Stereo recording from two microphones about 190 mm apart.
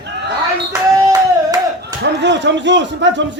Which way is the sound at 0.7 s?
20° right (ahead or behind).